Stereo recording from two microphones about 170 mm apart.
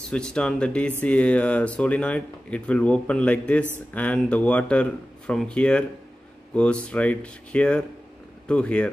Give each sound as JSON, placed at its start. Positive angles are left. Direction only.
{"t": 0.1, "sound": "speech", "side_deg": 5}